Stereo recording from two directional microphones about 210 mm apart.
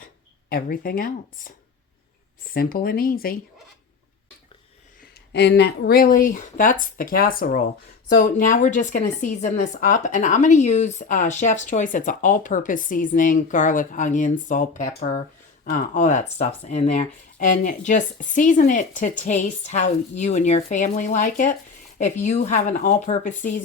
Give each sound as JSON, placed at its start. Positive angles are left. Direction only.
{"t": 0.5, "sound": "speech", "side_deg": 45}
{"t": 5.3, "sound": "a woman's voice", "side_deg": 55}